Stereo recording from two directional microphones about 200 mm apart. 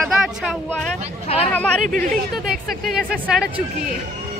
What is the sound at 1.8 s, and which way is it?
Speech, 40° right (ahead or behind).